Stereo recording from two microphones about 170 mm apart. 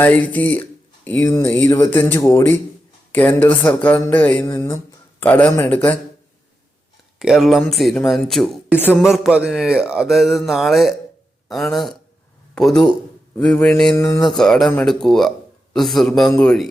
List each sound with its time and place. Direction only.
0.0 s speech: 10° left (ahead or behind)
7.2 s speech: centre (ahead or behind)
13.9 s speech: 15° left (ahead or behind)
14.3 s speech: 5° left (ahead or behind)